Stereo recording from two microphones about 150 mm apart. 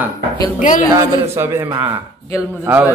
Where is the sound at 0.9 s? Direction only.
15° right (ahead or behind).